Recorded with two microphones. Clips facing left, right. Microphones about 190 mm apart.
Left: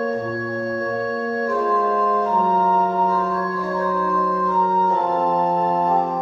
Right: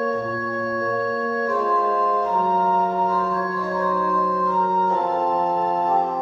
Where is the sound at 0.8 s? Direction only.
25° left (ahead or behind).